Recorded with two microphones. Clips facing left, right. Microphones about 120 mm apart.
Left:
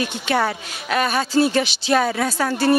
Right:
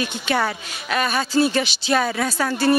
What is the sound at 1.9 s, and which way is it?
Speech, 40° left (ahead or behind).